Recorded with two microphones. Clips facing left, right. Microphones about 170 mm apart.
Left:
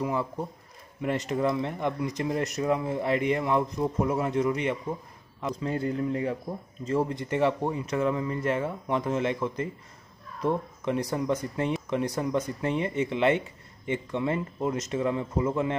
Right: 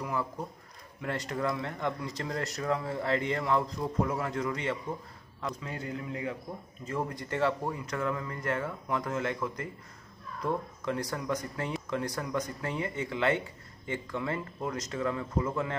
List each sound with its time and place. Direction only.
0.0 s speech: 25° left (ahead or behind)
5.6 s a man's voice: 35° left (ahead or behind)
6.9 s speech: 25° left (ahead or behind)